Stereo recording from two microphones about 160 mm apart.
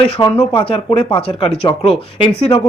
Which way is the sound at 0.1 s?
30° left (ahead or behind).